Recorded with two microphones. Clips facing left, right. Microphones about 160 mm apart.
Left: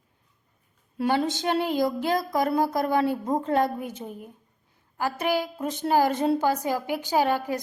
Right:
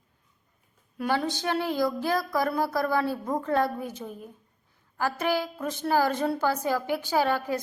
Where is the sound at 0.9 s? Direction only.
25° left (ahead or behind).